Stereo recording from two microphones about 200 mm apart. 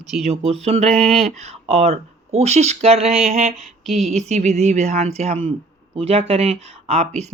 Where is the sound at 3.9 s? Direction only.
Centre (ahead or behind).